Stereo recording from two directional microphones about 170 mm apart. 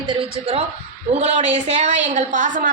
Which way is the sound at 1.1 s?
40° right (ahead or behind).